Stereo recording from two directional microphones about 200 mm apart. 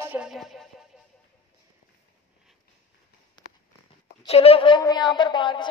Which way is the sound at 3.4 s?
20° left (ahead or behind).